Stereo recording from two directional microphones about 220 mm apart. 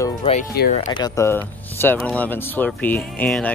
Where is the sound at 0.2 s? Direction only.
30° left (ahead or behind).